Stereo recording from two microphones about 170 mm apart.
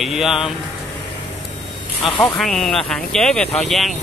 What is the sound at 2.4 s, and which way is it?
Speech, centre (ahead or behind).